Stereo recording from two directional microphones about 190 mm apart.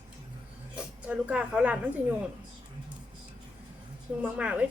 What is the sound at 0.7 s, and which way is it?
Speech, 5° right (ahead or behind).